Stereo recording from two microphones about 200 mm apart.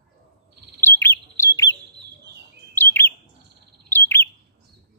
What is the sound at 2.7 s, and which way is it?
Bird, 10° left (ahead or behind).